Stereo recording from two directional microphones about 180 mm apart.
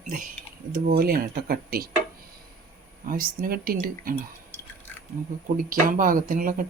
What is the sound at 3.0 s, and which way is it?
Speech, 55° right (ahead or behind).